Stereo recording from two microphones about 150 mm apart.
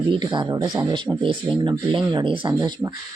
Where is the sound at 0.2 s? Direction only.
30° right (ahead or behind).